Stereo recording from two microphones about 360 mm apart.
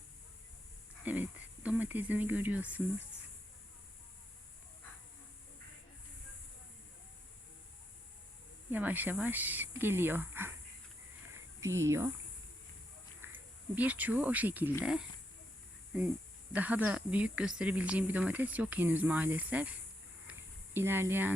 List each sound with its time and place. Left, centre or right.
1.0 s speech: centre
8.7 s speech: centre
11.6 s speech: centre
13.3 s speech: centre
20.3 s a sound: centre
20.7 s speech: centre